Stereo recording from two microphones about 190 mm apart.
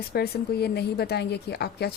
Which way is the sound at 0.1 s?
55° left (ahead or behind).